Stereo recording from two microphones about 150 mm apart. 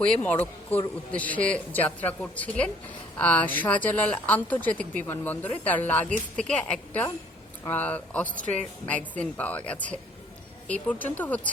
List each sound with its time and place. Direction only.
0.0 s speech: 10° left (ahead or behind)